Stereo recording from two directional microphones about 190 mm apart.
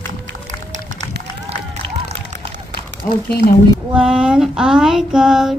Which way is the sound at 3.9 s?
5° right (ahead or behind).